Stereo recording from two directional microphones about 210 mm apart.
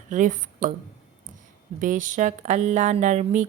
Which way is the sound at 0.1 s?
35° right (ahead or behind).